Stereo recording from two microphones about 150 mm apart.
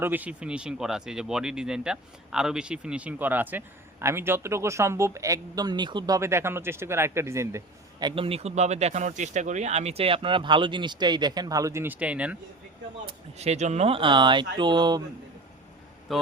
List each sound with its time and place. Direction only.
0.0 s speech: 10° right (ahead or behind); by 9.9 s 50° right (ahead or behind)
10.0 s speech: 35° right (ahead or behind); by 12.4 s 10° right (ahead or behind)
13.3 s speech: 45° right (ahead or behind); by 15.0 s 30° right (ahead or behind)
16.1 s speech: centre (ahead or behind)